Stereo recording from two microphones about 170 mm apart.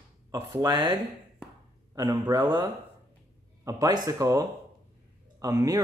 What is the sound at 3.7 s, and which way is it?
Speech, 20° right (ahead or behind).